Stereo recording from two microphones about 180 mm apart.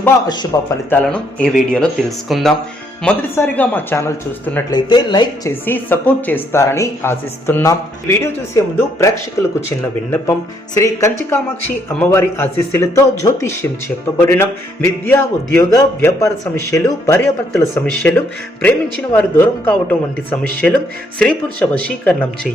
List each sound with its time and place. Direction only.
0.5 s speech: 15° left (ahead or behind)
0.9 s speech: 5° left (ahead or behind)
4.7 s speech: 25° left (ahead or behind)
5.5 s speech: 10° left (ahead or behind)